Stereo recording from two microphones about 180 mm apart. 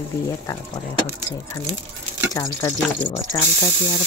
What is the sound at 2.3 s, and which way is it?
Speech, 20° left (ahead or behind).